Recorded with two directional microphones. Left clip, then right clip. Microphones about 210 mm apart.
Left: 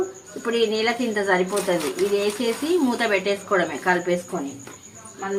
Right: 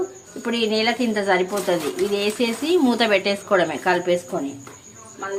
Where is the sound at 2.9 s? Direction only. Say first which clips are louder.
Right 3 dB; 25° right (ahead or behind).